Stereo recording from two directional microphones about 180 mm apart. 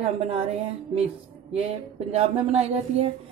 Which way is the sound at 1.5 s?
35° right (ahead or behind).